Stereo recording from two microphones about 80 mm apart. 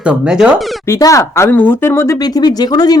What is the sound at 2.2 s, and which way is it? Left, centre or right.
Speech, left.